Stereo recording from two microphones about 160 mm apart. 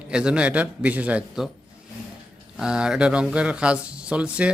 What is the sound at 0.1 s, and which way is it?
Speech, 5° right (ahead or behind).